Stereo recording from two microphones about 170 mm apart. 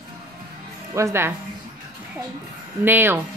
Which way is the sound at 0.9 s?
15° right (ahead or behind).